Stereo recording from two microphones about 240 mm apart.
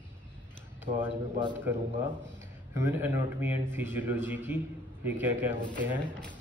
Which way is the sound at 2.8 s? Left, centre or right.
Centre.